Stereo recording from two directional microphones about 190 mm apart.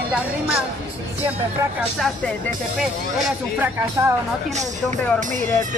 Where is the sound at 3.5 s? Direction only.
10° right (ahead or behind).